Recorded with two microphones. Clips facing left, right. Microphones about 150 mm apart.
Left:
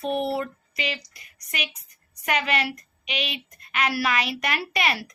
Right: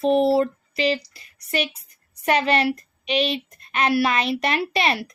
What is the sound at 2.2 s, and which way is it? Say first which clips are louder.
A woman's voice: right 6 dB; 35° right (ahead or behind).